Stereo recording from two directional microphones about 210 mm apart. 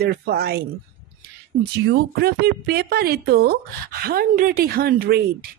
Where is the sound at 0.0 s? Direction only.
50° right (ahead or behind).